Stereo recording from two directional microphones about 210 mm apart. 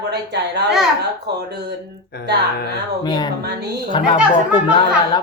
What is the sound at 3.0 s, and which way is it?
A woman's voice, 20° left (ahead or behind).